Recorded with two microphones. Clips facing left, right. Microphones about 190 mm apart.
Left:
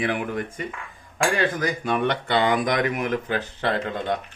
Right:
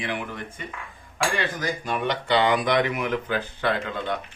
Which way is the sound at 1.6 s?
55° left (ahead or behind).